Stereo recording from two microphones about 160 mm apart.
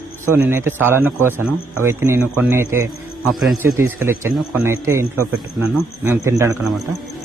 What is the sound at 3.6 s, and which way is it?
A man's voice, 15° right (ahead or behind).